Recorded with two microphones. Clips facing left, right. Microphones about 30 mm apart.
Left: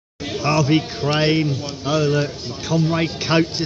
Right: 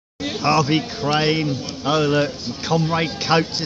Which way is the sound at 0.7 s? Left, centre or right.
Centre.